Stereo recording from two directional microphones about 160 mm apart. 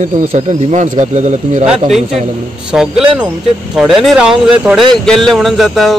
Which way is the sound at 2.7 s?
5° right (ahead or behind).